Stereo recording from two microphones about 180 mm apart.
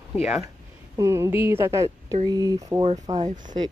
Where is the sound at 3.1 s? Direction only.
45° right (ahead or behind).